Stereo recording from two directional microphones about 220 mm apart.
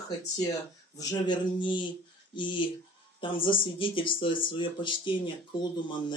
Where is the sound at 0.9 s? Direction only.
20° left (ahead or behind).